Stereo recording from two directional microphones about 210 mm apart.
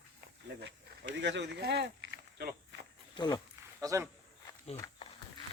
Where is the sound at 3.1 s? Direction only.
20° left (ahead or behind).